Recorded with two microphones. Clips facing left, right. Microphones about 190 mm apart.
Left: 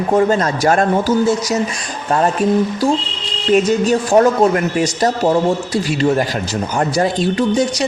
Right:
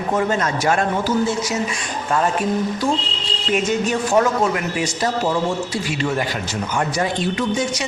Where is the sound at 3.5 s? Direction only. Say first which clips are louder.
Left 7 dB; 35° left (ahead or behind).